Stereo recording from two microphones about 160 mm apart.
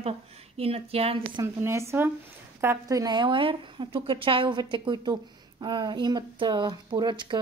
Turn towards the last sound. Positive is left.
turn(degrees=-30)  # may be behind; listen again after turning